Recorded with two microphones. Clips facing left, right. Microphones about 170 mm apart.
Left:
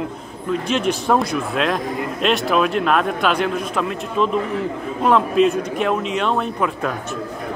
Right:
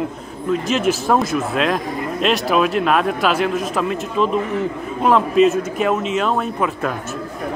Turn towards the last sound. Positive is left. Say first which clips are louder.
# right 1 dB
turn(degrees=-5)  # may be behind; listen again after turning